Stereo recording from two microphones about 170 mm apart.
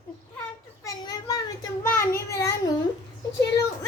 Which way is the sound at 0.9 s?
20° left (ahead or behind).